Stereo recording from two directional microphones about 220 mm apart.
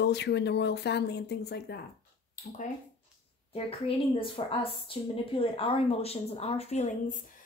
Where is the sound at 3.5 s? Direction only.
25° left (ahead or behind).